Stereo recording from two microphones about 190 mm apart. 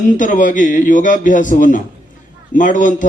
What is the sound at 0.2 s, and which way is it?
A man's voice, 45° left (ahead or behind).